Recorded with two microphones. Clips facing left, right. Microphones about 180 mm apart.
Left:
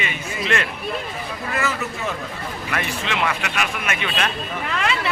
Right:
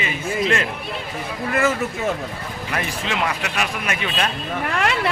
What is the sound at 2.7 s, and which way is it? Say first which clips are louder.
Speech: right 1 dB; 35° right (ahead or behind).